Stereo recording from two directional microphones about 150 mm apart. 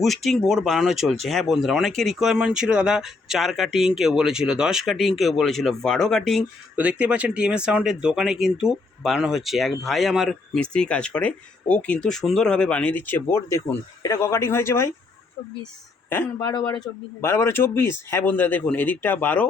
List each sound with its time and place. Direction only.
0.0 s speech: centre (ahead or behind)
6.7 s speech: 10° right (ahead or behind); by 14.8 s 15° left (ahead or behind)
16.0 s speech: 15° left (ahead or behind)
16.5 s speech: 30° left (ahead or behind)
17.2 s a man's voice: 20° left (ahead or behind)